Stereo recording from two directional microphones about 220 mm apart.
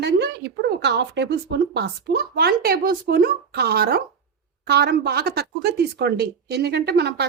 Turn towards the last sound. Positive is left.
turn(degrees=-50)  # may be behind; listen again after turning